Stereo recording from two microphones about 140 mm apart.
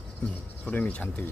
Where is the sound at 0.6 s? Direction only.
10° left (ahead or behind).